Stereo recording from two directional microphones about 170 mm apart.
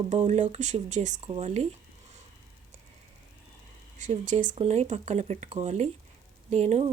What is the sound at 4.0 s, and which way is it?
Speech, 45° right (ahead or behind).